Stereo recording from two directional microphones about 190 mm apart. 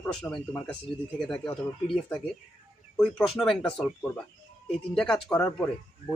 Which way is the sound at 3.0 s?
5° left (ahead or behind).